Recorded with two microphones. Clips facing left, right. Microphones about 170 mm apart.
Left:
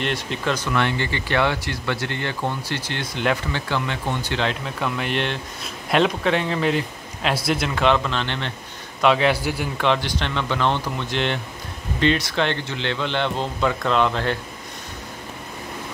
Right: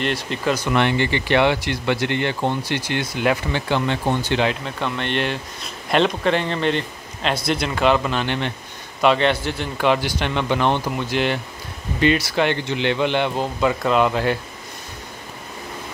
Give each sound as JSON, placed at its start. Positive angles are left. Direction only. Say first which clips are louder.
{"t": 0.0, "sound": "a man's voice", "louder": "right 2 dB", "side_deg": 0}
{"t": 0.7, "sound": "speech", "louder": "right 4 dB", "side_deg": -20}
{"t": 3.6, "sound": "speech", "louder": "right 7 dB", "side_deg": -25}
{"t": 4.4, "sound": "a man's voice", "louder": "right 3 dB", "side_deg": 0}
{"t": 9.0, "sound": "a man's voice", "louder": "right 1 dB", "side_deg": 0}
{"t": 9.8, "sound": "speech", "louder": "right 4 dB", "side_deg": -5}
{"t": 11.1, "sound": "a man's voice", "louder": "right 2 dB", "side_deg": -5}